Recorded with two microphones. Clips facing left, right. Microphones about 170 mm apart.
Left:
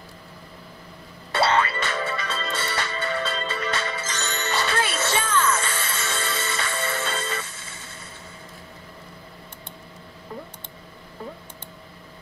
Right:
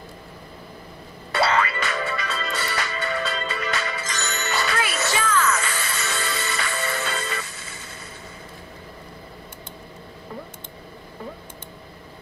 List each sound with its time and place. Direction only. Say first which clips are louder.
1.3 s music: even; 30° left (ahead or behind)